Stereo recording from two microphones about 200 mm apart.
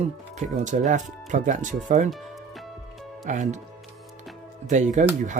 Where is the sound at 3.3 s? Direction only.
35° right (ahead or behind).